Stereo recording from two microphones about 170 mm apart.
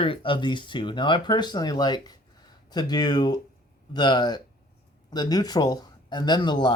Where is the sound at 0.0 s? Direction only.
30° left (ahead or behind).